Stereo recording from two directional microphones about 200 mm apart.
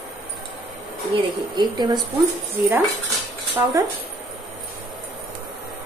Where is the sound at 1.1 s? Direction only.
20° right (ahead or behind).